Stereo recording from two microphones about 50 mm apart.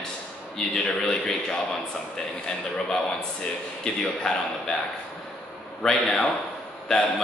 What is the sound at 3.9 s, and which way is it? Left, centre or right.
Speech, centre.